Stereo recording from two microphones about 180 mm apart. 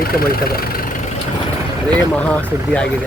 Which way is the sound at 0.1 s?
55° left (ahead or behind).